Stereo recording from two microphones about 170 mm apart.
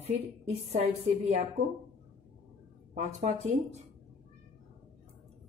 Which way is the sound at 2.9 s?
40° right (ahead or behind).